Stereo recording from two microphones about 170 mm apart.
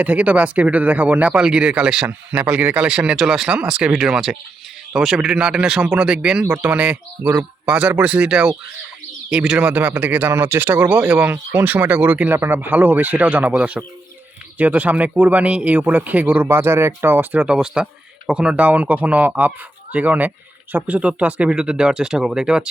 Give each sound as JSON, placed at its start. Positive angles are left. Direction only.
{"t": 0.0, "sound": "speech", "side_deg": -10}